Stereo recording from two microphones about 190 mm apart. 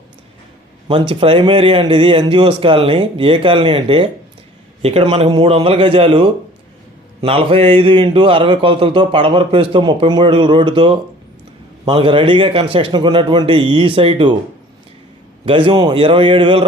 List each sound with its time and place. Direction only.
0.9 s speech: 25° right (ahead or behind)
15.4 s speech: 25° right (ahead or behind)